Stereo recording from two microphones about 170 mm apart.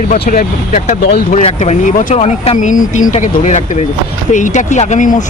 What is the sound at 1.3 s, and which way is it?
Speech, 40° left (ahead or behind).